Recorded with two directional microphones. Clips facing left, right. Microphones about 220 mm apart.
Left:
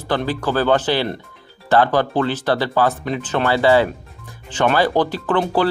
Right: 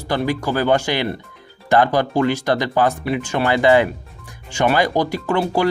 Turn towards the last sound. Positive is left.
turn(degrees=-10)  # may be behind; listen again after turning